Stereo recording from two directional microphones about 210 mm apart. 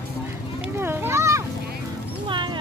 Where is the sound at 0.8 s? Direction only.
10° right (ahead or behind).